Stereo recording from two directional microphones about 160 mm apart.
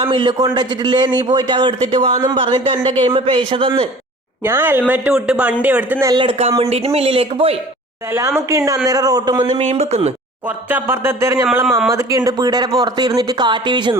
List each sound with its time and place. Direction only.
0.0 s a man's voice: 30° right (ahead or behind)
4.4 s speech: 15° right (ahead or behind)
6.1 s speech: 35° right (ahead or behind)
8.4 s a man's voice: 20° right (ahead or behind)
9.5 s speech: 40° right (ahead or behind)
10.7 s a man's voice: 15° right (ahead or behind); by 13.9 s 30° right (ahead or behind)